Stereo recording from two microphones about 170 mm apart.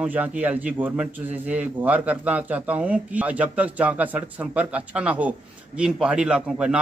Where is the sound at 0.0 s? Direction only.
10° right (ahead or behind).